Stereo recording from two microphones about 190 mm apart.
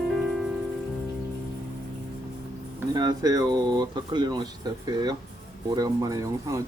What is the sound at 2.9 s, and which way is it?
Speech, 20° right (ahead or behind).